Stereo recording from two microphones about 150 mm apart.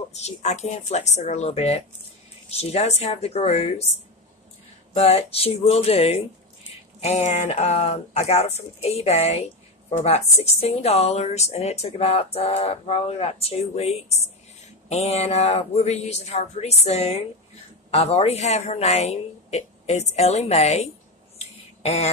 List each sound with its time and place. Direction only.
0.1 s speech: 45° left (ahead or behind)
4.9 s speech: 40° left (ahead or behind)